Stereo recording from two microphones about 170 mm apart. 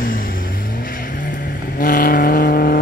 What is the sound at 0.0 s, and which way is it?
Vehicle, 55° left (ahead or behind).